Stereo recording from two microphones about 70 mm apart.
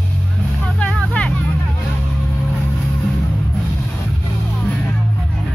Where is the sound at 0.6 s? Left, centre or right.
Centre.